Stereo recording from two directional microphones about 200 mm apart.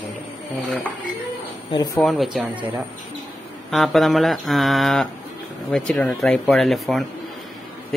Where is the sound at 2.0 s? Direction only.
Centre (ahead or behind).